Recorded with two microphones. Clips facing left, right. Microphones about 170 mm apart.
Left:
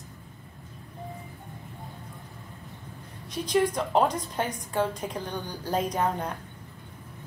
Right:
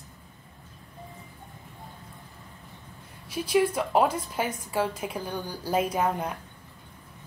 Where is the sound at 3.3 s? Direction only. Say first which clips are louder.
Right 1 dB; 5° right (ahead or behind).